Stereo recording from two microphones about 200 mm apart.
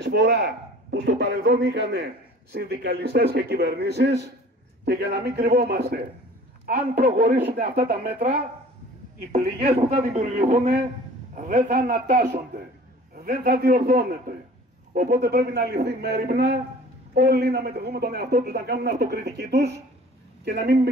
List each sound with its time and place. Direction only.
0.0 s a man's voice: 60° right (ahead or behind)